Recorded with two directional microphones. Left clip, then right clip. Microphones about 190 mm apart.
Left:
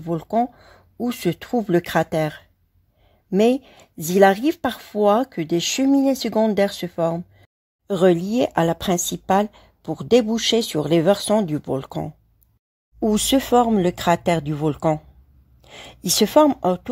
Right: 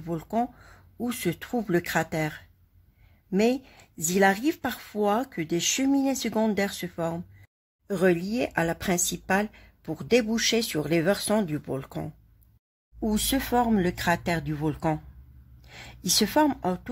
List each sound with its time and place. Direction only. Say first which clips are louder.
0.0 s speech: left 7 dB; 30° left (ahead or behind)